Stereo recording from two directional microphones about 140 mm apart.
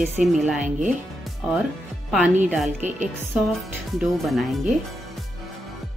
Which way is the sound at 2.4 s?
Centre (ahead or behind).